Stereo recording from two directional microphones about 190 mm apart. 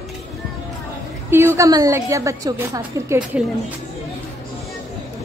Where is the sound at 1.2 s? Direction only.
10° right (ahead or behind).